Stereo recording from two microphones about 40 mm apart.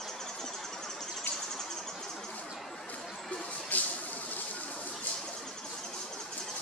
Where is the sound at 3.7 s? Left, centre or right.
Left.